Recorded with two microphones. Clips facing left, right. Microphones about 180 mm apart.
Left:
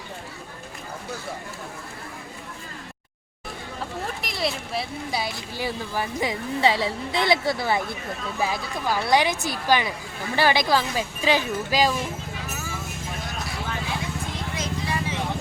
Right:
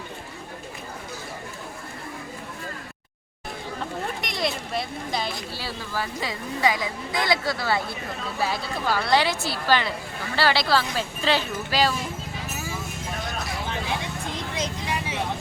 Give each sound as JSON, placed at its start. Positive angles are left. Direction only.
{"t": 4.2, "sound": "speech", "side_deg": 0}
{"t": 14.5, "sound": "vehicle", "side_deg": -20}